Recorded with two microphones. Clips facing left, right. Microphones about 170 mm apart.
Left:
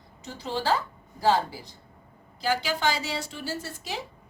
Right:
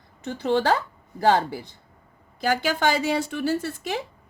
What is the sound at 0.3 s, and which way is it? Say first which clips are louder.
A woman's voice: right 6 dB; 60° right (ahead or behind).